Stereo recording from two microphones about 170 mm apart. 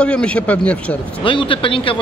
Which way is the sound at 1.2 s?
30° left (ahead or behind).